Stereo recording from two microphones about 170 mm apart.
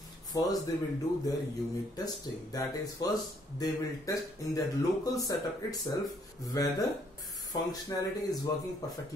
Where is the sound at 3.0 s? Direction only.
20° left (ahead or behind).